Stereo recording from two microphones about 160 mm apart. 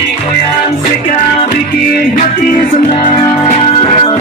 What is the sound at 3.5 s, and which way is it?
Music, 40° left (ahead or behind).